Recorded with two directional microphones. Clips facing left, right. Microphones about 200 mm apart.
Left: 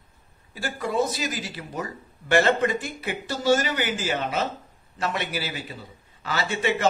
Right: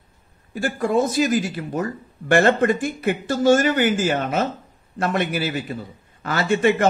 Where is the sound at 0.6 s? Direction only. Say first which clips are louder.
Right 5 dB; 50° right (ahead or behind).